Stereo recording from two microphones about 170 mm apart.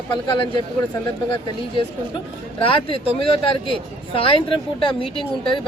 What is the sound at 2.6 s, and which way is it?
Speech, 30° left (ahead or behind).